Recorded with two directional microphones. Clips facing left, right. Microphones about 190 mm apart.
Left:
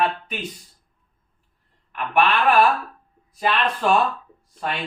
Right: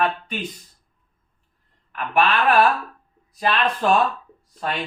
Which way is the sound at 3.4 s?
Centre (ahead or behind).